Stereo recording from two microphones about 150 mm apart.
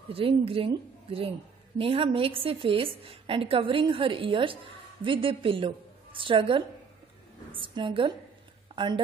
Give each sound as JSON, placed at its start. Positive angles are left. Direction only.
{"t": 0.1, "sound": "a woman's voice", "side_deg": -40}